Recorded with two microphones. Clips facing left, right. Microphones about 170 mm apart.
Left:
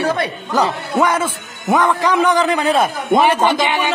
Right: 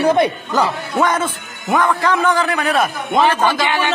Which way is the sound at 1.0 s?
10° left (ahead or behind).